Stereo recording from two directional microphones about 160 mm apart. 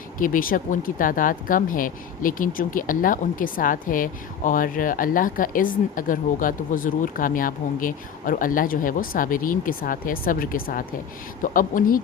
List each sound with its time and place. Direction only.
0.2 s speech: 60° left (ahead or behind)